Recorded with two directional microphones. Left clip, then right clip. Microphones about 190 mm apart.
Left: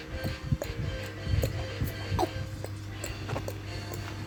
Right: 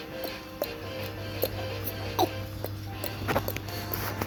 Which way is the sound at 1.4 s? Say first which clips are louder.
Right 4 dB; 10° left (ahead or behind).